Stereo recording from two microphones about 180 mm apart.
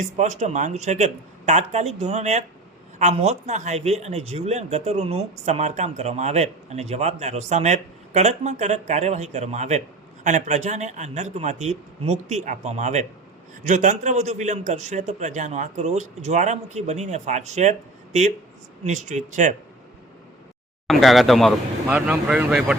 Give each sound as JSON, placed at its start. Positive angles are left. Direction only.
{"t": 0.0, "sound": "speech", "side_deg": -40}
{"t": 20.8, "sound": "speech", "side_deg": 0}